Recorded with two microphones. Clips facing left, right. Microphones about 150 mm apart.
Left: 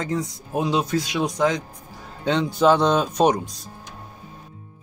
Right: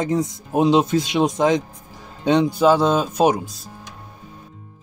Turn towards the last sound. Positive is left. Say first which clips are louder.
# right 1 dB
turn(degrees=-5)  # may be behind; listen again after turning